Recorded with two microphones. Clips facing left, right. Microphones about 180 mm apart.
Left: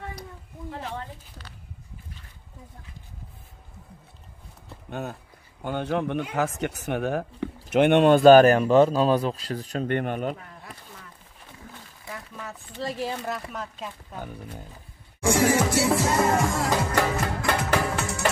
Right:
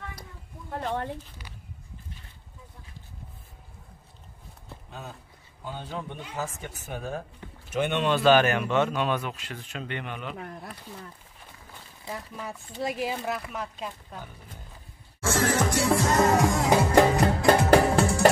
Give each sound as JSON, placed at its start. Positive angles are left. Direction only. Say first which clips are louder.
{"t": 0.7, "sound": "a sound", "louder": "right 4 dB", "side_deg": -50}
{"t": 4.8, "sound": "a sound", "louder": "left 9 dB", "side_deg": 70}
{"t": 5.6, "sound": "a man's voice", "louder": "left 9 dB", "side_deg": 70}
{"t": 12.0, "sound": "speech", "louder": "right 2 dB", "side_deg": -25}
{"t": 13.0, "sound": "speech", "louder": "even", "side_deg": -5}
{"t": 15.1, "sound": "music", "louder": "left 4 dB", "side_deg": 15}
{"t": 17.2, "sound": "music", "louder": "right 6 dB", "side_deg": -30}